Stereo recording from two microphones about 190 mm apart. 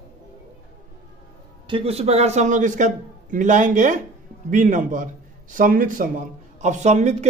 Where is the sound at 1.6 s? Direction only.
30° right (ahead or behind).